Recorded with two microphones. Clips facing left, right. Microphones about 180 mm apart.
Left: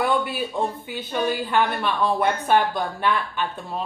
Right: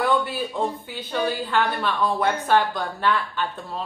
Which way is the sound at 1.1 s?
15° left (ahead or behind).